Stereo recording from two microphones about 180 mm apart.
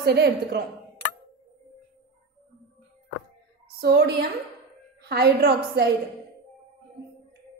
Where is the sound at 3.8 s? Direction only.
65° right (ahead or behind).